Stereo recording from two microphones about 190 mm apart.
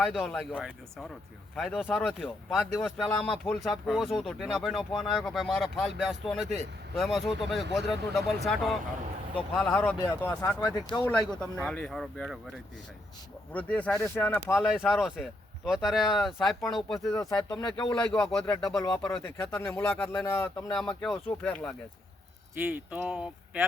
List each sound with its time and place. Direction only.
0.0 s speech: centre (ahead or behind); by 11.0 s 20° left (ahead or behind)
11.0 s speech: 5° left (ahead or behind)
14.5 s speech: centre (ahead or behind)
17.1 s speech: 15° left (ahead or behind)
17.3 s speech: 5° left (ahead or behind)
22.6 s speech: 10° right (ahead or behind)